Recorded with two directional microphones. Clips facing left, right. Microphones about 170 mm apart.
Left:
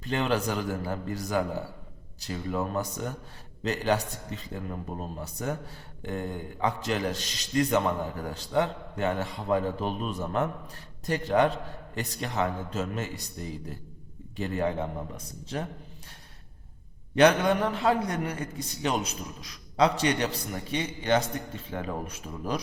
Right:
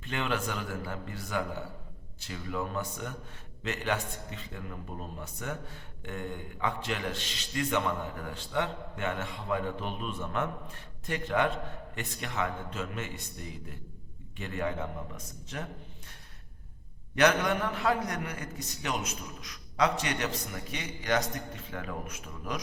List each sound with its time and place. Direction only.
0.0 s a man's voice: 35° left (ahead or behind)
17.2 s a man's voice: 30° left (ahead or behind)